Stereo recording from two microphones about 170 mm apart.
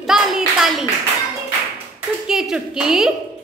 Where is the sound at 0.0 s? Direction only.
Centre (ahead or behind).